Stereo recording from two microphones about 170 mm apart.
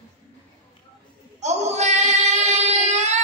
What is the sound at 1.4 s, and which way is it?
Child singing, 40° right (ahead or behind).